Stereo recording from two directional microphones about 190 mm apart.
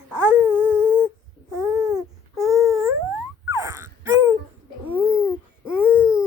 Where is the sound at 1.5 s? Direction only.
15° right (ahead or behind).